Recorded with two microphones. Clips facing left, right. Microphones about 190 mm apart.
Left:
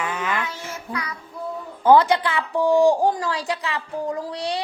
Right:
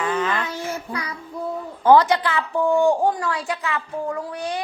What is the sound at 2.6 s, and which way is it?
A woman's voice, 35° left (ahead or behind).